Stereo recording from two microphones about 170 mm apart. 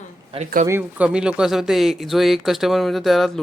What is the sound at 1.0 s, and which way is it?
Speech, 5° right (ahead or behind).